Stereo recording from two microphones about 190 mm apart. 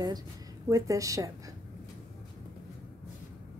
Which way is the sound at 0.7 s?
15° right (ahead or behind).